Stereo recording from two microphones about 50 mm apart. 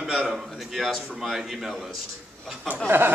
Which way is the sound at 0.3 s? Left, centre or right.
Centre.